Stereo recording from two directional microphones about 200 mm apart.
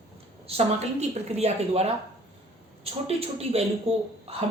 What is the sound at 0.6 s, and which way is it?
A woman's voice, 30° right (ahead or behind).